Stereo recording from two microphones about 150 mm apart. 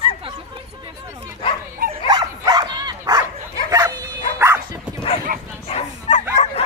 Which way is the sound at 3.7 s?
25° right (ahead or behind).